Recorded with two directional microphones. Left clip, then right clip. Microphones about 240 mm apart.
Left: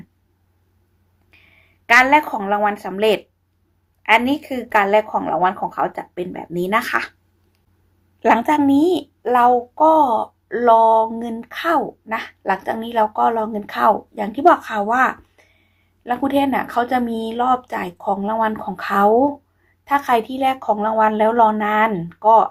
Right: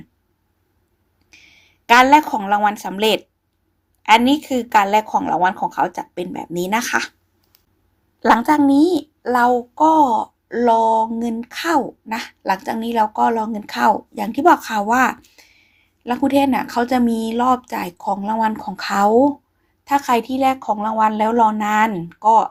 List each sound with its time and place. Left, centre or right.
1.3 s a woman's voice: right
8.2 s a woman's voice: centre